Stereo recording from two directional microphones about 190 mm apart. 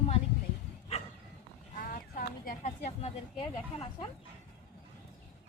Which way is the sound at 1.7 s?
45° left (ahead or behind).